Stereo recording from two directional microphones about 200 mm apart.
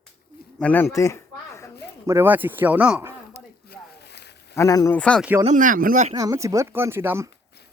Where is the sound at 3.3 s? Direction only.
55° left (ahead or behind).